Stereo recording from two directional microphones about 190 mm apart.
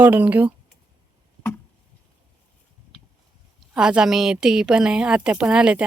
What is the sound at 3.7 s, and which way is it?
A woman's voice, 5° right (ahead or behind).